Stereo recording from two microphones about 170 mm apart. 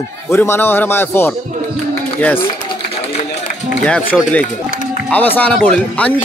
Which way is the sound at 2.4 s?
30° left (ahead or behind).